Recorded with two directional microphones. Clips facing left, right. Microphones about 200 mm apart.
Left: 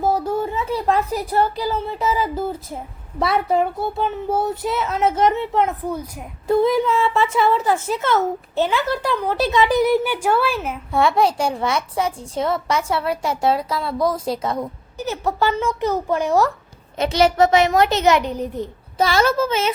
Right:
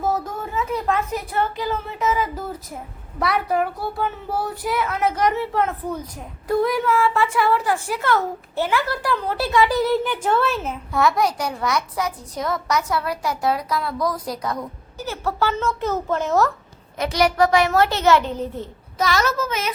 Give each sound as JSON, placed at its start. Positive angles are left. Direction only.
{"t": 0.0, "sound": "speech", "side_deg": 30}
{"t": 5.9, "sound": "a child's voice", "side_deg": 10}
{"t": 6.5, "sound": "speech", "side_deg": 25}
{"t": 10.9, "sound": "speech", "side_deg": 30}
{"t": 17.0, "sound": "speech", "side_deg": 25}
{"t": 18.9, "sound": "speech", "side_deg": 30}